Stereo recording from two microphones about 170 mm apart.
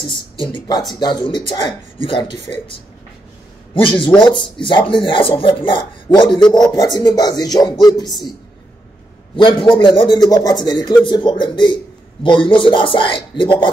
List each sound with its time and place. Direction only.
0.1 s a man's voice: 30° left (ahead or behind)
3.7 s a man's voice: 30° left (ahead or behind)
9.4 s a man's voice: 30° left (ahead or behind)